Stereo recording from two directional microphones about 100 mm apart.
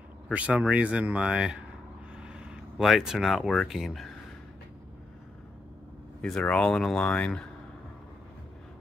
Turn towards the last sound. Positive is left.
turn(degrees=10)  # may be behind; listen again after turning